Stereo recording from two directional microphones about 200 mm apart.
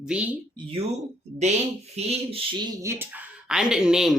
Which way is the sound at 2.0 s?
30° right (ahead or behind).